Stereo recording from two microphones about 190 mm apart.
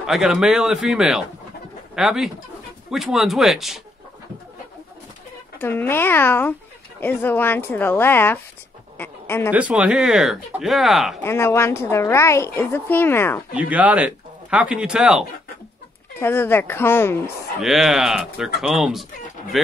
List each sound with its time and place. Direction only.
0.0 s speech: centre (ahead or behind)
5.6 s speech: 10° left (ahead or behind)
8.9 s a sound: 10° left (ahead or behind)
9.5 s speech: 5° right (ahead or behind)
11.2 s speech: 15° left (ahead or behind)
13.6 s speech: 10° right (ahead or behind)
16.2 s speech: 10° left (ahead or behind)
17.6 s speech: centre (ahead or behind)